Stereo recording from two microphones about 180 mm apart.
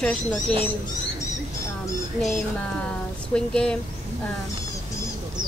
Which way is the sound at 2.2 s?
Centre (ahead or behind).